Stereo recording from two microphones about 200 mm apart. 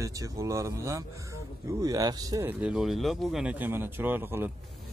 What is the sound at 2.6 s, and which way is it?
Speech, centre (ahead or behind).